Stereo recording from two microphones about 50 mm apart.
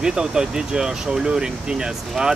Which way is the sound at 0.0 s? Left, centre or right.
Centre.